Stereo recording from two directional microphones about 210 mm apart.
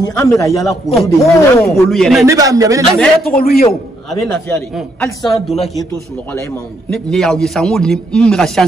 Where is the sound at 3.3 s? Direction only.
45° left (ahead or behind).